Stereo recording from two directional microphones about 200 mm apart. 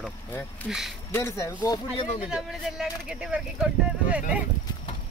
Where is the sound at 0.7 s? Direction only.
Centre (ahead or behind).